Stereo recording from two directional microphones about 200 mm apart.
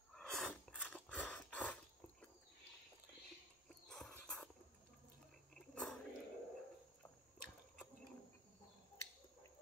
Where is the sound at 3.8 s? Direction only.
5° left (ahead or behind).